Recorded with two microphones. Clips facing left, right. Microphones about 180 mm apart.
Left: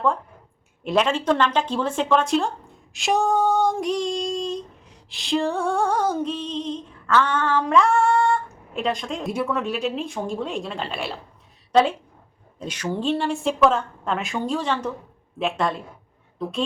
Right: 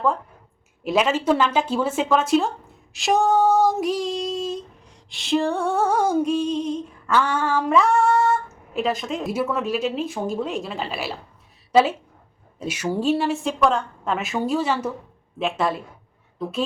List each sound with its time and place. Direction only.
0.9 s a woman's voice: 5° right (ahead or behind)
2.9 s female singing: centre (ahead or behind)
11.7 s a woman's voice: 5° right (ahead or behind)
15.4 s female singing: centre (ahead or behind)